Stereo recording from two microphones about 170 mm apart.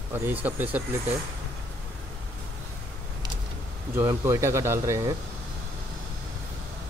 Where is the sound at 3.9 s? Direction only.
15° right (ahead or behind).